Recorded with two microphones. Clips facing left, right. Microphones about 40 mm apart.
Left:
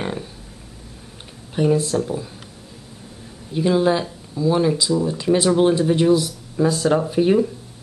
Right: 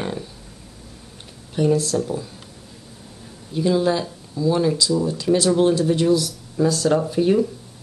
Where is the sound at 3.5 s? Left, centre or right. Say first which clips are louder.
Left 2 dB; centre.